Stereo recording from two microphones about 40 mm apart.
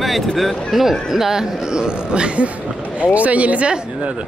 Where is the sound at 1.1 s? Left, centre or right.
Centre; by 3.7 s right.